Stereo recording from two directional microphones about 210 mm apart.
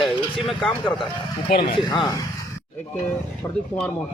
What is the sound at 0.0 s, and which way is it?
Speech, centre (ahead or behind).